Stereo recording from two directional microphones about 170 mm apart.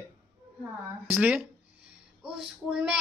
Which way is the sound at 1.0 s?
10° right (ahead or behind).